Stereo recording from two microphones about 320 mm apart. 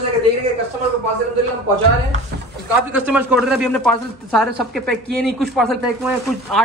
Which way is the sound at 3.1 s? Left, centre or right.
Centre.